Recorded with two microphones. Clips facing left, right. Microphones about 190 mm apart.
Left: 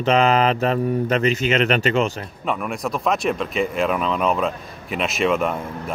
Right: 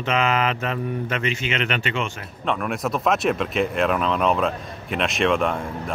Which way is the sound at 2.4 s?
5° left (ahead or behind).